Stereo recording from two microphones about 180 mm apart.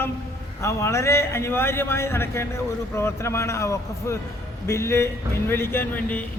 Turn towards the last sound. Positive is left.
turn(degrees=10)  # may be behind; listen again after turning